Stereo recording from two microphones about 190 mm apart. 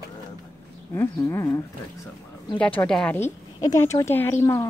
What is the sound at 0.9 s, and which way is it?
Speech, 15° left (ahead or behind).